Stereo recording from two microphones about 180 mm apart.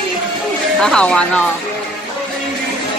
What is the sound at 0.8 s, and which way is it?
Speech, 5° left (ahead or behind).